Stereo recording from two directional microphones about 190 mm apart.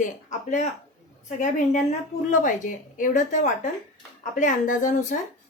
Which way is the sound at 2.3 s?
45° left (ahead or behind).